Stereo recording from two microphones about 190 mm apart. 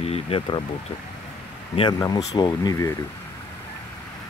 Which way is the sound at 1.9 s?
20° left (ahead or behind).